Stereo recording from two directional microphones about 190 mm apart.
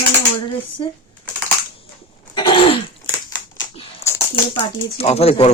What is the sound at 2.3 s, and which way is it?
Throat clearing, 25° left (ahead or behind).